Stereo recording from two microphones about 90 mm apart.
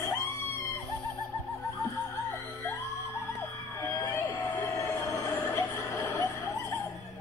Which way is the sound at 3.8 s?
35° left (ahead or behind).